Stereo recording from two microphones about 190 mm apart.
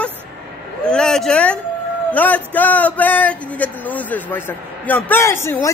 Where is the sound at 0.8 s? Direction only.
5° left (ahead or behind).